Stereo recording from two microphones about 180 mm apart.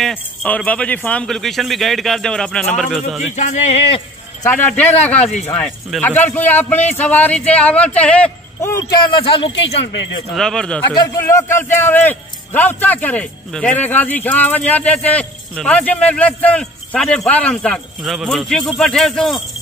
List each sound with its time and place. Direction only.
0.0 s a man's voice: 5° left (ahead or behind)
4.5 s a man's voice: 10° left (ahead or behind)
5.2 s speech: 40° left (ahead or behind)
5.5 s a man's voice: 5° left (ahead or behind)
9.2 s speech: 30° left (ahead or behind)
10.3 s a man's voice: 5° left (ahead or behind)